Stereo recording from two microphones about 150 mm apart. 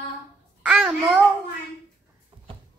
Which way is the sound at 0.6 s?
5° right (ahead or behind).